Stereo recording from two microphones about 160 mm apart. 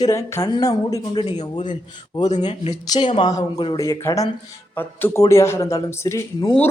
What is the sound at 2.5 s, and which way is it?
Speech, 40° left (ahead or behind).